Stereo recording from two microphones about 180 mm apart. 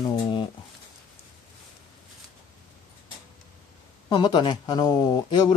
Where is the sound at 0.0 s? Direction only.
25° left (ahead or behind).